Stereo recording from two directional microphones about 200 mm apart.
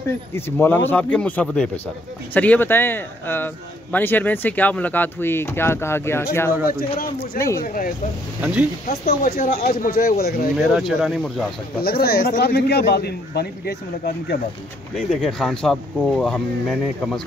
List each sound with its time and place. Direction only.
0.3 s a man's voice: 10° left (ahead or behind)
7.6 s a man's voice: 45° left (ahead or behind)
8.4 s speech: 5° right (ahead or behind)
8.8 s a man's voice: 50° left (ahead or behind)
10.7 s speech: centre (ahead or behind)
11.8 s a man's voice: 50° left (ahead or behind)
15.0 s speech: centre (ahead or behind)